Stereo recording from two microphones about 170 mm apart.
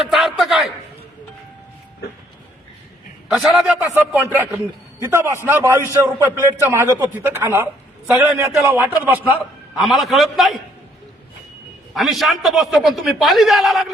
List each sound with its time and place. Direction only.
0.1 s a sound: centre (ahead or behind)
3.2 s a man's voice: 5° right (ahead or behind)
11.9 s a man's voice: centre (ahead or behind)